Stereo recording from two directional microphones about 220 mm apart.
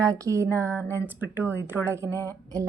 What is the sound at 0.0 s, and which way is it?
Speech, 15° right (ahead or behind).